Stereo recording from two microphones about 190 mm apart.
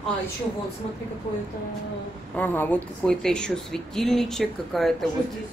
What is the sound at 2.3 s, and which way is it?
Speech, 10° left (ahead or behind).